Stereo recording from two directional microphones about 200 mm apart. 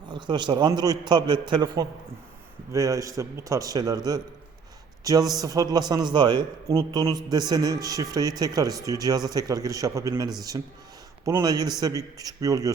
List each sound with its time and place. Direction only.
0.1 s a man's voice: 20° right (ahead or behind)